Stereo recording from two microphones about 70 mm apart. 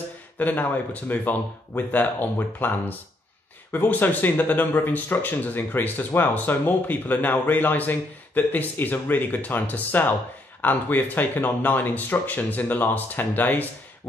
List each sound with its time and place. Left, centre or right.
0.4 s speech: left